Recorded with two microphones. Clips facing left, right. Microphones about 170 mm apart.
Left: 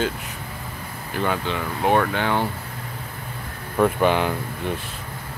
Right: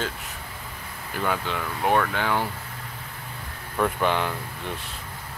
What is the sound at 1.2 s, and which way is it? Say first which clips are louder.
Speech: left 3 dB; centre (ahead or behind).